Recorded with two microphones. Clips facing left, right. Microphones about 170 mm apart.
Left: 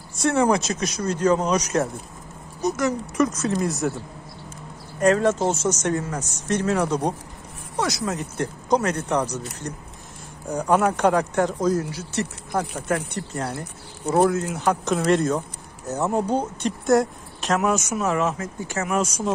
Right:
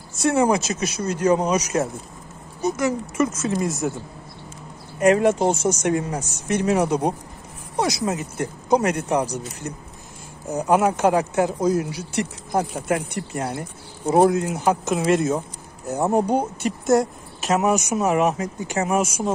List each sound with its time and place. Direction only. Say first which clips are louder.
0.6 s speech: right 1 dB; 5° right (ahead or behind)
5.0 s speech: right 2 dB; 15° right (ahead or behind)
10.5 s speech: right 1 dB; 10° right (ahead or behind)
14.9 s speech: left 2 dB; 5° right (ahead or behind)
17.6 s speech: right 3 dB; 20° right (ahead or behind)